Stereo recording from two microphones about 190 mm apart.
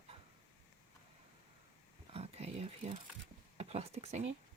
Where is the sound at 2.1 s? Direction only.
30° right (ahead or behind).